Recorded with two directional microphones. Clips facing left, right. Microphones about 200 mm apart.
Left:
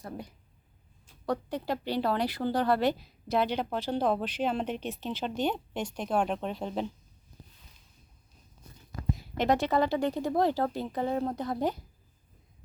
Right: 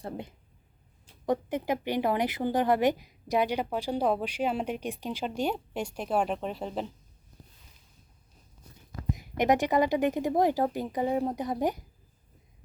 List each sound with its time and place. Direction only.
0.0 s speech: 25° right (ahead or behind); by 6.9 s centre (ahead or behind)
9.1 s speech: 15° right (ahead or behind)